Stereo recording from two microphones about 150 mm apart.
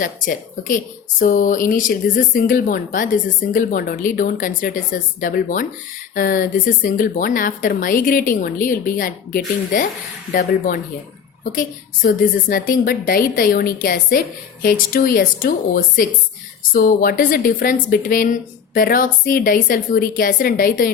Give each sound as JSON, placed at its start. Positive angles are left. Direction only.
{"t": 0.0, "sound": "a woman's voice", "side_deg": 65}
{"t": 12.0, "sound": "a woman's voice", "side_deg": 70}